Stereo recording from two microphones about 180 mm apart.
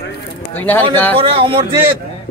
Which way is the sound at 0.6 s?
10° left (ahead or behind).